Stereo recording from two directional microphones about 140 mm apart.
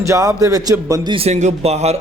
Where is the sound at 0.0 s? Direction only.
25° right (ahead or behind).